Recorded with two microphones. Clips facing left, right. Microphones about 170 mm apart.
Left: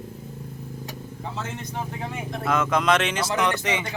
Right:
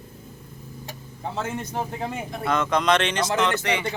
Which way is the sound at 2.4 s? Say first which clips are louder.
Even; 5° left (ahead or behind).